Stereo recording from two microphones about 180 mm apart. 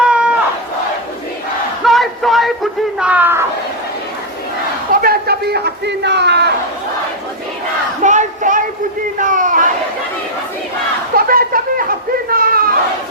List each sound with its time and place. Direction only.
0.0 s crowd: 5° right (ahead or behind)
1.8 s battle cry: centre (ahead or behind)
3.0 s speech: 10° right (ahead or behind)
4.9 s speech: 55° right (ahead or behind)
8.0 s a sound: 40° right (ahead or behind)
11.1 s a sound: 55° right (ahead or behind)